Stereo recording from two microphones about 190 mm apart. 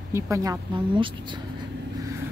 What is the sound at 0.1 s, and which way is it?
Speech, 15° right (ahead or behind).